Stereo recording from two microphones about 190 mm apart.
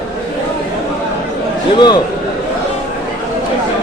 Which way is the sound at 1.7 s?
20° left (ahead or behind).